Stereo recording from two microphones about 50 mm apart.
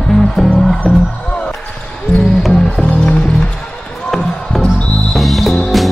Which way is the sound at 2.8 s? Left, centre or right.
Left.